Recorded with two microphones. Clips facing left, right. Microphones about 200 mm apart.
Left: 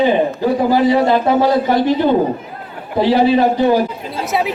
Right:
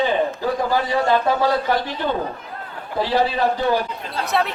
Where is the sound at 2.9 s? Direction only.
20° left (ahead or behind).